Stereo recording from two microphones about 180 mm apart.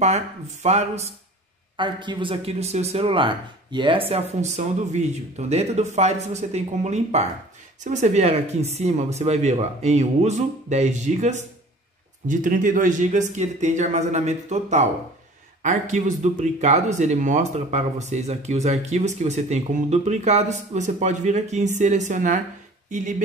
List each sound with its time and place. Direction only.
0.0 s speech: 40° right (ahead or behind)
1.8 s speech: 25° right (ahead or behind); by 23.2 s 45° right (ahead or behind)